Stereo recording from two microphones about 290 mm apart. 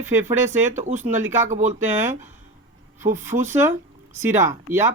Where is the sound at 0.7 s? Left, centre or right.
Right.